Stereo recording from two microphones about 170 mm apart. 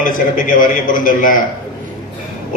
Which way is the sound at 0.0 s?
50° left (ahead or behind).